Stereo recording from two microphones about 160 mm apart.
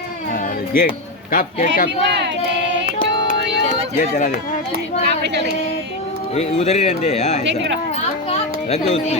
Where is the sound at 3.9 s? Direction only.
55° left (ahead or behind).